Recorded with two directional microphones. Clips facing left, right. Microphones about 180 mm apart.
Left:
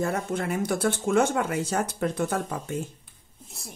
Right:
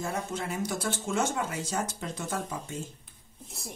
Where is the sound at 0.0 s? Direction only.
55° left (ahead or behind).